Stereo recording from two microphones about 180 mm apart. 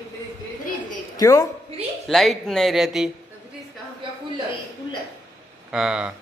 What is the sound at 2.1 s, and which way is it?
Speech, centre (ahead or behind).